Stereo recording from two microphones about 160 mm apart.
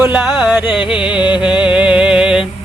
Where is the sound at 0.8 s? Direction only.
30° left (ahead or behind).